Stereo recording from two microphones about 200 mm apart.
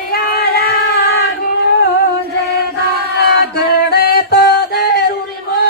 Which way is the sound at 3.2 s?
55° left (ahead or behind).